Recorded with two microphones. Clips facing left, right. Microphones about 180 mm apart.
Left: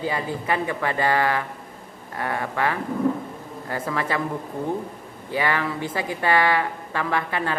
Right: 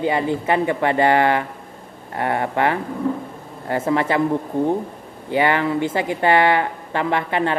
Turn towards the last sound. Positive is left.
turn(degrees=-25)  # may be behind; listen again after turning